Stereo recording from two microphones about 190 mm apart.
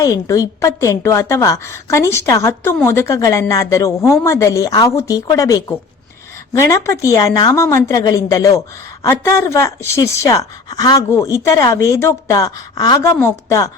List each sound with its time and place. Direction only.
0.0 s a woman's voice: 15° left (ahead or behind)